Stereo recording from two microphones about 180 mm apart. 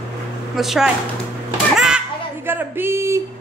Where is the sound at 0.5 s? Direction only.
Centre (ahead or behind).